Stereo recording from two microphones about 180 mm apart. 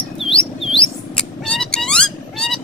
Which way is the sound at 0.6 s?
30° left (ahead or behind).